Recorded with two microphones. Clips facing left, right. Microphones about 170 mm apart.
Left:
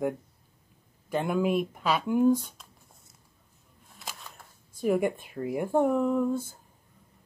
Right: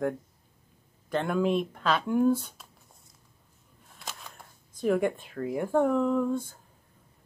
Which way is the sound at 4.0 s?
Centre (ahead or behind).